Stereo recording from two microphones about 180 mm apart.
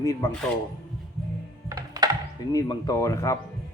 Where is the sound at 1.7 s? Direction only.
20° right (ahead or behind).